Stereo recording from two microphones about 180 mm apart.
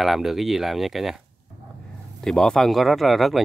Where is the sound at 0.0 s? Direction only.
Centre (ahead or behind).